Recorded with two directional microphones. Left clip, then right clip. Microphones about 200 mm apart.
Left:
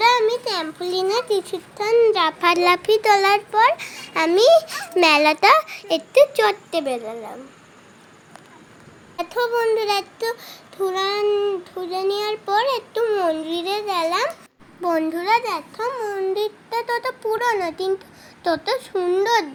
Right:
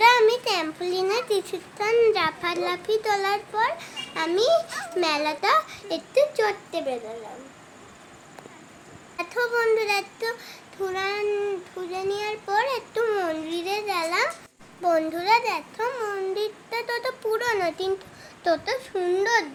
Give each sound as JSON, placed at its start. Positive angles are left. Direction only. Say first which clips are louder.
{"t": 0.0, "sound": "a sound", "louder": "even", "side_deg": -5}
{"t": 0.8, "sound": "a child's voice", "louder": "left 4 dB", "side_deg": 15}
{"t": 2.4, "sound": "a child's voice", "louder": "left 10 dB", "side_deg": 40}
{"t": 9.1, "sound": "a child's voice", "louder": "left 3 dB", "side_deg": 20}